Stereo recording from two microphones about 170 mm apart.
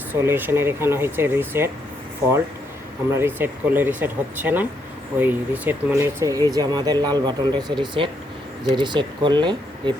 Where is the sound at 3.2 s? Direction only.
10° right (ahead or behind).